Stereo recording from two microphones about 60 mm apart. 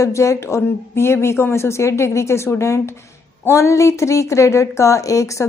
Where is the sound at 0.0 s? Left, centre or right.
Left.